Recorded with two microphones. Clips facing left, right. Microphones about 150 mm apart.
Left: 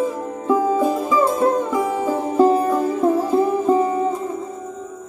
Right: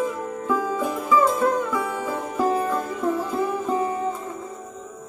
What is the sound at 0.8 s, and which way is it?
Music, 30° left (ahead or behind).